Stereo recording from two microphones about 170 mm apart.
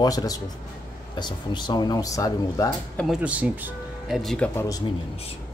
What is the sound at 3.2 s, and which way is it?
Speech, 10° right (ahead or behind).